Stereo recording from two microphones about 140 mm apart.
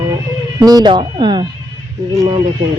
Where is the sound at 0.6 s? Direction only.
30° right (ahead or behind).